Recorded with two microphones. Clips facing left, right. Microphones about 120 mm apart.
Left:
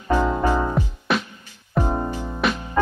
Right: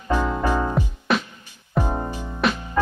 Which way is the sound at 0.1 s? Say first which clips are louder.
Left 2 dB; 15° left (ahead or behind).